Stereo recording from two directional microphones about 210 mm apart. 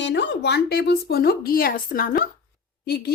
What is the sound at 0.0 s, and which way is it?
Speech, 55° left (ahead or behind).